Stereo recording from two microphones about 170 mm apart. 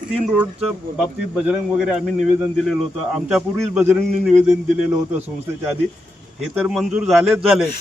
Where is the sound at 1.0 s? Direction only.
5° right (ahead or behind).